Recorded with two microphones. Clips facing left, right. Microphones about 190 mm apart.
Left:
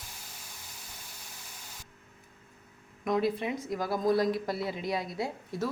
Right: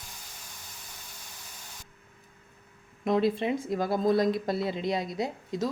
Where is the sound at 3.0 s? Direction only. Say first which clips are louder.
Right 3 dB; 25° right (ahead or behind).